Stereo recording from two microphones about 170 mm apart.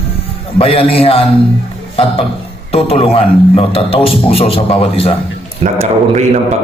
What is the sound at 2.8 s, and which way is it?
A man's voice, 35° left (ahead or behind).